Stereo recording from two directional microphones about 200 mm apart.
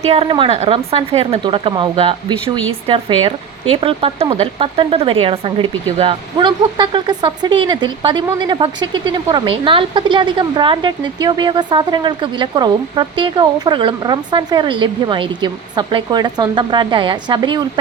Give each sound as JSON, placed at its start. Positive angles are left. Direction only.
{"t": 0.0, "sound": "speech", "side_deg": -30}